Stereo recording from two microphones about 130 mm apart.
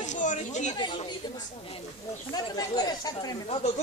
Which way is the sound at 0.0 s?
70° left (ahead or behind).